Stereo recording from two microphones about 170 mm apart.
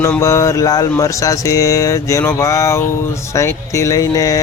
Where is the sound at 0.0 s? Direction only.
15° left (ahead or behind).